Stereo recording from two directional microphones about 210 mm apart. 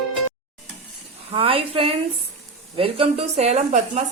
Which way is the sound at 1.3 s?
25° right (ahead or behind).